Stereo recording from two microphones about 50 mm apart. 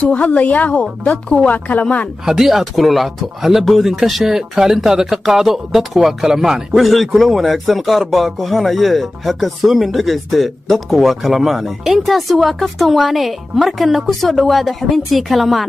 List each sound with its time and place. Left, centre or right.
0.0 s a woman's voice: left
2.2 s speech: centre